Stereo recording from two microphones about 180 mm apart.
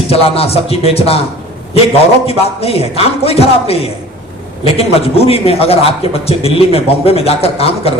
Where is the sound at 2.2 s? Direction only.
35° left (ahead or behind).